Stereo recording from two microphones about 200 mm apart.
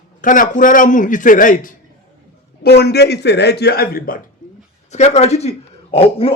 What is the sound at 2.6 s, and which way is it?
A man's voice, 55° left (ahead or behind).